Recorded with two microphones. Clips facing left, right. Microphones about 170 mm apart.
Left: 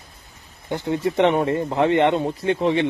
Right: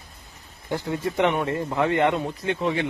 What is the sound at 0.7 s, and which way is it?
Speech, 20° left (ahead or behind).